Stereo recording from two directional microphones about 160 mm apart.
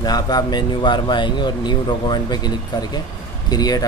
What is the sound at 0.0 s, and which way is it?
A man's voice, 25° left (ahead or behind).